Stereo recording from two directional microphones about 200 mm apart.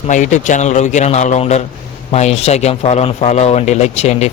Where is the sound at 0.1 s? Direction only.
35° left (ahead or behind).